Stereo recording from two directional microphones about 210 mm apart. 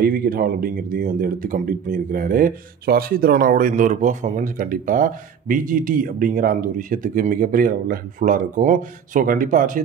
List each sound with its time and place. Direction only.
0.0 s speech: 45° right (ahead or behind)